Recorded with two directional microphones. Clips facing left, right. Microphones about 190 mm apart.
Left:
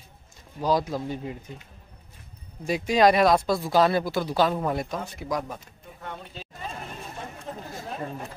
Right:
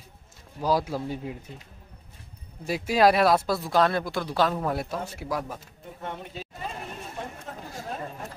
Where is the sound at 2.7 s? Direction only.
5° right (ahead or behind).